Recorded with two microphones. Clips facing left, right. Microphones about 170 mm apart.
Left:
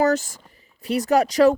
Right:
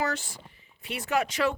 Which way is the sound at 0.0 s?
40° left (ahead or behind).